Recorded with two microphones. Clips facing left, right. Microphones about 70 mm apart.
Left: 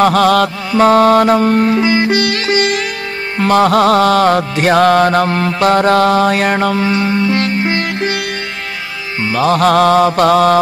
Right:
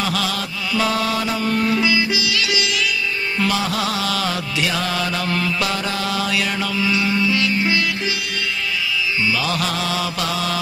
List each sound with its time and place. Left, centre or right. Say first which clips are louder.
0.0 s music: left 13 dB; left
9.2 s music: left 13 dB; left